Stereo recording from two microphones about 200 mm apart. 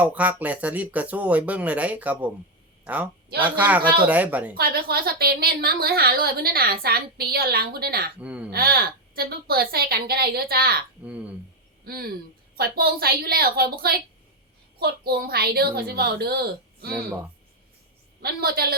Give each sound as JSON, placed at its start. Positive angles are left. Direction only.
{"t": 0.0, "sound": "speech", "side_deg": -5}
{"t": 4.5, "sound": "a woman's voice", "side_deg": -50}
{"t": 8.2, "sound": "speech", "side_deg": -5}
{"t": 8.5, "sound": "a woman's voice", "side_deg": -50}
{"t": 11.0, "sound": "speech", "side_deg": -5}
{"t": 11.9, "sound": "a woman's voice", "side_deg": -50}
{"t": 18.2, "sound": "a woman's voice", "side_deg": -50}